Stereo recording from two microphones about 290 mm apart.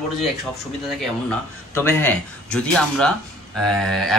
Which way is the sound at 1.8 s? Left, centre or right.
Centre.